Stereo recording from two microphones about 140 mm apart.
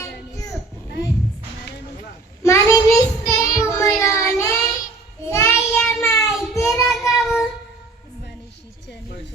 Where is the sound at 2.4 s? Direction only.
20° left (ahead or behind).